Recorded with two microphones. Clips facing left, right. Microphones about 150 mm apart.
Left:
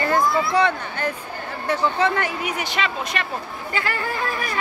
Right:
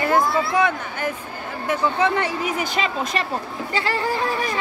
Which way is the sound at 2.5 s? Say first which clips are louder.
Right 2 dB; 35° right (ahead or behind).